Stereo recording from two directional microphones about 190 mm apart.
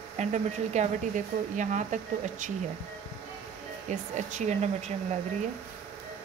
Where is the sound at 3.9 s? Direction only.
40° right (ahead or behind).